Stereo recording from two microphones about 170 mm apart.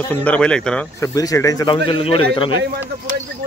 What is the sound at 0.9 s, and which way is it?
A man's voice, 20° left (ahead or behind).